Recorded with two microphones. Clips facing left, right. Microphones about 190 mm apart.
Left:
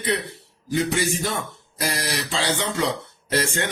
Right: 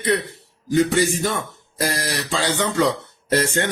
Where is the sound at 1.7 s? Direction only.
45° right (ahead or behind).